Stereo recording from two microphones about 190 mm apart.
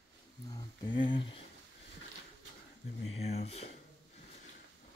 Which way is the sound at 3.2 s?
35° left (ahead or behind).